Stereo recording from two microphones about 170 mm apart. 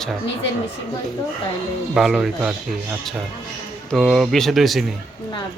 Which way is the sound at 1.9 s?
5° right (ahead or behind).